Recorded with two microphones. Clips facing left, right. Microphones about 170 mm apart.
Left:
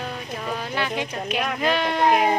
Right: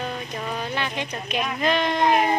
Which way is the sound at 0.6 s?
5° left (ahead or behind).